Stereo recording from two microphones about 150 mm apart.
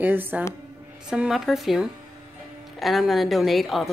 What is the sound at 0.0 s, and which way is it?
A woman's voice, 15° right (ahead or behind).